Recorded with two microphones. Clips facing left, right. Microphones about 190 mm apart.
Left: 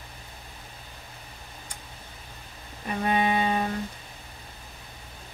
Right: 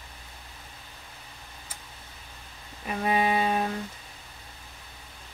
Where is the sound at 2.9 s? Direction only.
5° right (ahead or behind).